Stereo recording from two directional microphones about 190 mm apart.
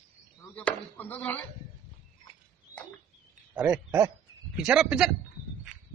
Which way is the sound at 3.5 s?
5° right (ahead or behind).